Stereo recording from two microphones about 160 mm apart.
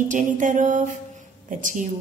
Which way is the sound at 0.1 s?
55° right (ahead or behind).